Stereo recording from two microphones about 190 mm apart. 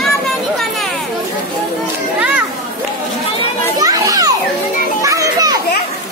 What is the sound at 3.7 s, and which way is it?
Children playing, 20° right (ahead or behind).